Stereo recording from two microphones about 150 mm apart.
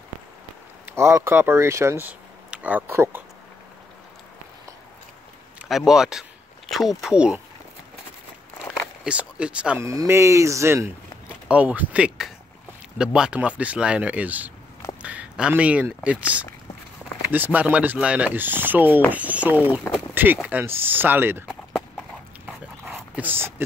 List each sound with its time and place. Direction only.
0.8 s speech: 15° right (ahead or behind)
5.7 s speech: centre (ahead or behind)
9.0 s speech: 5° right (ahead or behind)
9.8 s speech: 20° right (ahead or behind)
22.5 s dog: 5° right (ahead or behind)